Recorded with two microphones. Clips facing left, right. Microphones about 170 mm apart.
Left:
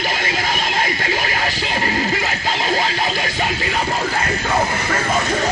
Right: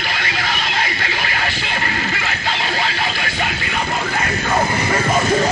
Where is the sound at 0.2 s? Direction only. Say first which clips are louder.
Left 2 dB; 45° left (ahead or behind).